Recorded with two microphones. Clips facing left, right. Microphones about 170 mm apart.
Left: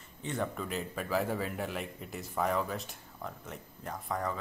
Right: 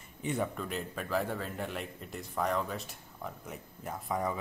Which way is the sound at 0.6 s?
Centre (ahead or behind).